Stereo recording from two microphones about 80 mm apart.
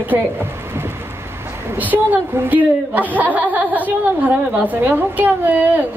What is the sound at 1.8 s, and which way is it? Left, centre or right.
A woman's voice, right.